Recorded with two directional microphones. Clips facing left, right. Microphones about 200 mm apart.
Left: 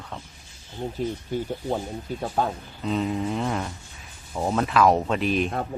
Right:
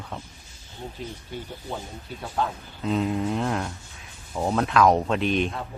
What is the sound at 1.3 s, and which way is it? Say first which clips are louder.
Speech: left 6 dB; 45° left (ahead or behind).